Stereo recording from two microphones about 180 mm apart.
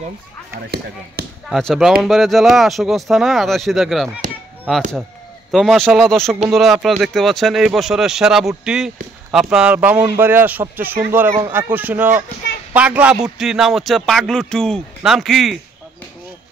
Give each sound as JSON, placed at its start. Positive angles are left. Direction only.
{"t": 0.6, "sound": "speech", "side_deg": -65}
{"t": 1.5, "sound": "a man's voice", "side_deg": 0}